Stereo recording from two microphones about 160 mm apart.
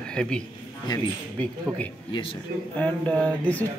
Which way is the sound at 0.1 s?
5° left (ahead or behind).